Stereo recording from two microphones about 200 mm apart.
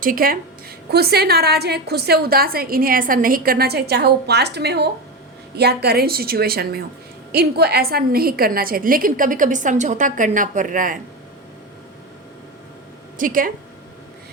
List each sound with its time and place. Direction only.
0.0 s a woman's voice: 45° right (ahead or behind)
13.1 s a woman's voice: 45° right (ahead or behind)